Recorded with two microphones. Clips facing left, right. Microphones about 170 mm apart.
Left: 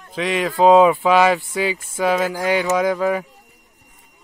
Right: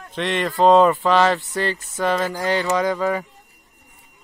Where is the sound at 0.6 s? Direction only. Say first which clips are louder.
Left 2 dB; 5° left (ahead or behind).